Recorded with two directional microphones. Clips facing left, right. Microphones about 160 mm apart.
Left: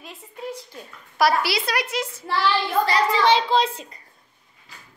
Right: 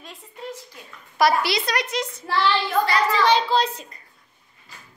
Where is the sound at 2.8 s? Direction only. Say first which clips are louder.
Left 1 dB; 30° left (ahead or behind).